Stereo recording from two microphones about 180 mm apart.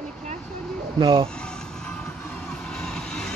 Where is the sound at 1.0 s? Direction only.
30° right (ahead or behind).